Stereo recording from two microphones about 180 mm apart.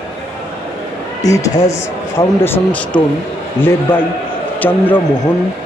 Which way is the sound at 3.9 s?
5° left (ahead or behind).